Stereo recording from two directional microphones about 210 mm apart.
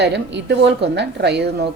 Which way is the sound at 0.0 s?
55° right (ahead or behind).